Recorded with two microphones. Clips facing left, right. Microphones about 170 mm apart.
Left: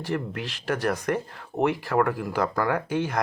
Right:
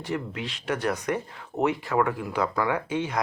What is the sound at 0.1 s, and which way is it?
Speech, 55° left (ahead or behind).